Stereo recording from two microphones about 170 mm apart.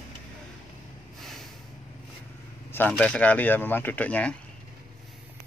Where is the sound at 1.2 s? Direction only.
Centre (ahead or behind).